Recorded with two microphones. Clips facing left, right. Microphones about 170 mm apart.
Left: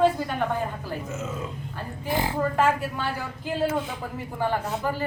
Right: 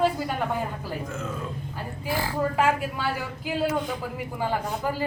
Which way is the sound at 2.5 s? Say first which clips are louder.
Even; 10° right (ahead or behind).